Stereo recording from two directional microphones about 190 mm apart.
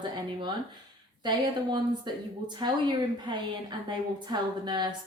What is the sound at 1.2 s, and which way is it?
A woman's voice, 25° right (ahead or behind).